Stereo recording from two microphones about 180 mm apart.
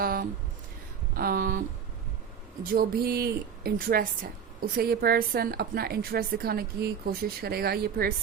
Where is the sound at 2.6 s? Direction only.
55° right (ahead or behind).